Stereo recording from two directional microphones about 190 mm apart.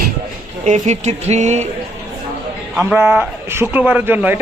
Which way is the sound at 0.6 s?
40° right (ahead or behind).